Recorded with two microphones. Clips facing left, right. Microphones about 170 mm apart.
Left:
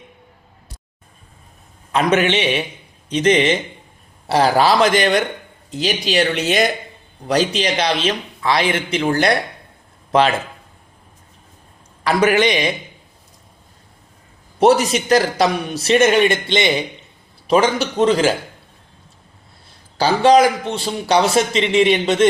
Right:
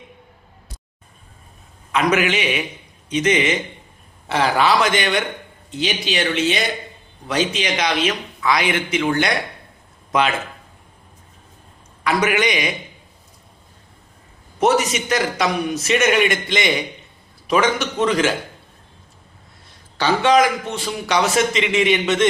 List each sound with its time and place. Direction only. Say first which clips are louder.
1.9 s a man's voice: left 2 dB; 30° left (ahead or behind)
7.3 s a man's voice: left 3 dB; 35° left (ahead or behind)
12.0 s a man's voice: left 4 dB; 30° left (ahead or behind)
14.6 s a man's voice: left 4 dB; 35° left (ahead or behind)
20.0 s a man's voice: left 3 dB; 35° left (ahead or behind)